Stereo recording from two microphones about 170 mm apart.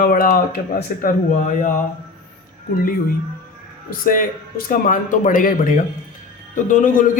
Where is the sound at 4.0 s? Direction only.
55° left (ahead or behind).